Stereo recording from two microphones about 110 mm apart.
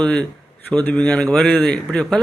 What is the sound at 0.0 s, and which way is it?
A man's voice, 10° left (ahead or behind).